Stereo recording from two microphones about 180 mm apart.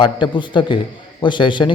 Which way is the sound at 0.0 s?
25° left (ahead or behind).